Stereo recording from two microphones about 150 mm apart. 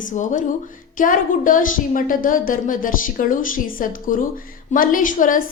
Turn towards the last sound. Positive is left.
turn(degrees=65)  # may be behind; listen again after turning